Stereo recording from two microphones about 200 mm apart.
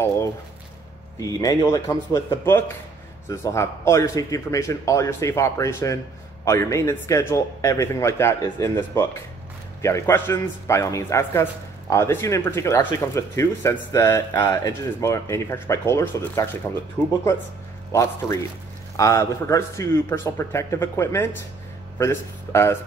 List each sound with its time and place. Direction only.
1.2 s speech: 20° left (ahead or behind)